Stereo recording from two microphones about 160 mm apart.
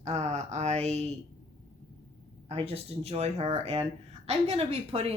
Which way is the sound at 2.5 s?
35° right (ahead or behind).